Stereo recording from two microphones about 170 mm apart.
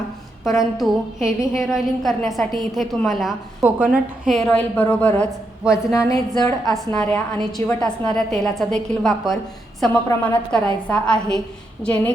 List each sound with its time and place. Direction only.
0.4 s a woman's voice: centre (ahead or behind)
6.1 s a woman's voice: 20° left (ahead or behind)
6.7 s a woman's voice: 5° left (ahead or behind)